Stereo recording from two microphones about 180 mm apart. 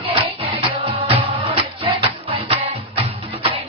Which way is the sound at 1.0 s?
30° right (ahead or behind).